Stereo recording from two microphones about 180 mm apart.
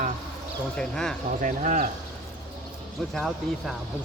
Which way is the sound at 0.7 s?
5° left (ahead or behind).